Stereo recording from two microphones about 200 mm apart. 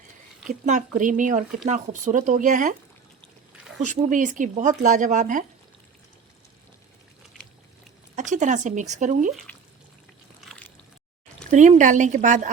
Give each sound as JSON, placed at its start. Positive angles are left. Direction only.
{"t": 0.4, "sound": "speech", "side_deg": -40}
{"t": 3.8, "sound": "speech", "side_deg": -40}
{"t": 8.1, "sound": "speech", "side_deg": -40}
{"t": 11.5, "sound": "speech", "side_deg": -35}